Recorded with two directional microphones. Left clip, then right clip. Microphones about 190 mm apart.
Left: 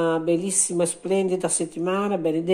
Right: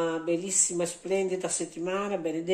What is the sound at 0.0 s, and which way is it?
Speech, 35° left (ahead or behind).